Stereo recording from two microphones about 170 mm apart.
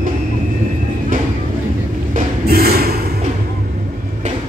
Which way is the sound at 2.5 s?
65° right (ahead or behind).